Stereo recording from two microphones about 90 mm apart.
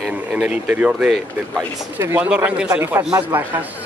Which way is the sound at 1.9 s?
25° right (ahead or behind).